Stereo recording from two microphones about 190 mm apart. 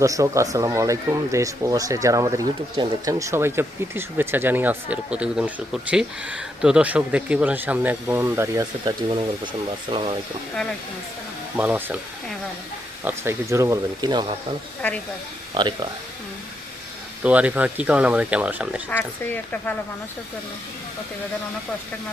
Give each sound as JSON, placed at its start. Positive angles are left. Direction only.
{"t": 0.0, "sound": "speech", "side_deg": -15}
{"t": 8.8, "sound": "speech", "side_deg": -25}
{"t": 11.5, "sound": "speech", "side_deg": -10}
{"t": 13.1, "sound": "speech", "side_deg": -15}
{"t": 14.8, "sound": "speech", "side_deg": 5}
{"t": 15.5, "sound": "speech", "side_deg": -25}
{"t": 17.2, "sound": "speech", "side_deg": -5}
{"t": 18.9, "sound": "speech", "side_deg": 10}